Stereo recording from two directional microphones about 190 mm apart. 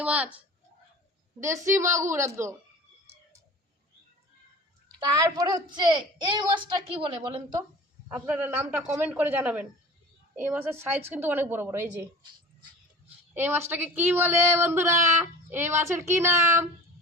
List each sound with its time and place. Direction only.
0.0 s a sound: 5° right (ahead or behind)
1.4 s a woman's voice: 15° right (ahead or behind)
4.9 s a woman's voice: 20° right (ahead or behind)
8.0 s a woman's voice: 10° right (ahead or behind)
13.3 s a woman's voice: 10° right (ahead or behind)